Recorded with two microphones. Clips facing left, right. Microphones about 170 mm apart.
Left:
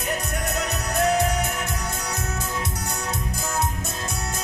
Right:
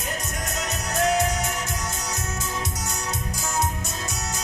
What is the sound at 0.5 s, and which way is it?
Music, 60° left (ahead or behind).